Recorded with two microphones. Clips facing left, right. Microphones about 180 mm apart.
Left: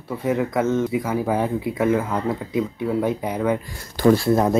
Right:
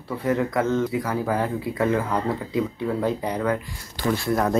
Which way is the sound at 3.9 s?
40° left (ahead or behind).